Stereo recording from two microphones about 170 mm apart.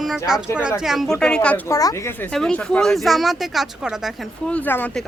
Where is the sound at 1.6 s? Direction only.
20° left (ahead or behind).